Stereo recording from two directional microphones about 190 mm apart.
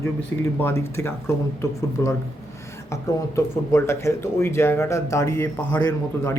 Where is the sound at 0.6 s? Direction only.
10° left (ahead or behind).